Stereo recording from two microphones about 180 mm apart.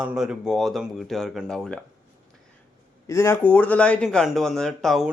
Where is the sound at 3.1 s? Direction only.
15° left (ahead or behind).